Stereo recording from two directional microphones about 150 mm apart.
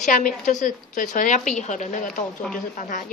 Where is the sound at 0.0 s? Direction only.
60° left (ahead or behind).